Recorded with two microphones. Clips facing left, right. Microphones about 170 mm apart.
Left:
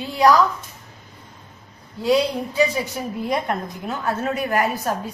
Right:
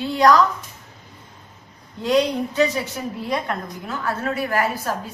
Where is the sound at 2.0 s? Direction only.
10° left (ahead or behind).